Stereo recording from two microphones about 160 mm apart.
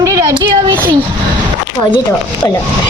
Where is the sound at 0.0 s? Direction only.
20° right (ahead or behind).